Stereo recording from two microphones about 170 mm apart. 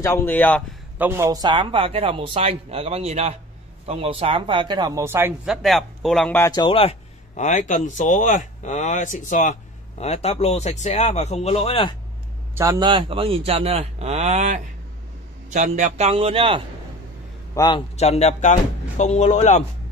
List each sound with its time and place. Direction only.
0.0 s speech: 15° left (ahead or behind)
0.9 s speech: 15° right (ahead or behind)
5.5 s speech: centre (ahead or behind)
6.4 s speech: 25° left (ahead or behind)
12.5 s speech: 20° right (ahead or behind)
17.6 s a man's voice: 25° left (ahead or behind)
17.9 s speech: 40° left (ahead or behind)